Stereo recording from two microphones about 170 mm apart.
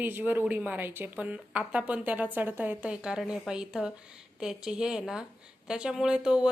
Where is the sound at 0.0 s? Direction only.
10° right (ahead or behind).